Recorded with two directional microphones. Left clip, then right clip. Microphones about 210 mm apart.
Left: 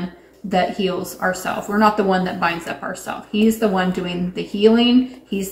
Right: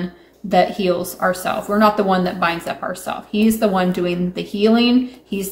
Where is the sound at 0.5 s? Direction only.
45° right (ahead or behind).